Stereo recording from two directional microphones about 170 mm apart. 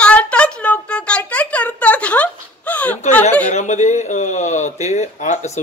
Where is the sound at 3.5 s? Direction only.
45° left (ahead or behind).